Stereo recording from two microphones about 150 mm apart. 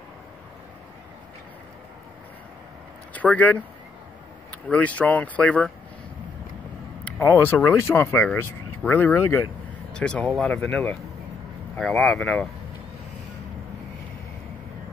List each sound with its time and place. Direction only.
3.1 s speech: 10° left (ahead or behind)
7.1 s speech: 15° left (ahead or behind)
9.9 s speech: 5° left (ahead or behind)